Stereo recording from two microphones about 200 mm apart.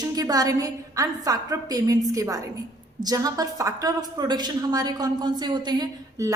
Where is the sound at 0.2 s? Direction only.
20° right (ahead or behind).